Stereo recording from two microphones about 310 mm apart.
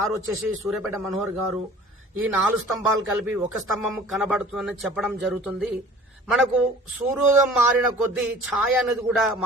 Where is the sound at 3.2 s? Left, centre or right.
Centre.